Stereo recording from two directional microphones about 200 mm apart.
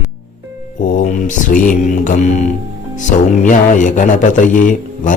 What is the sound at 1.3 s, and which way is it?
Speech, 40° left (ahead or behind).